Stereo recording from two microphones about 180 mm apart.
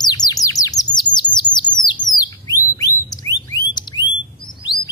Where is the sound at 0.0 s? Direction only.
25° left (ahead or behind).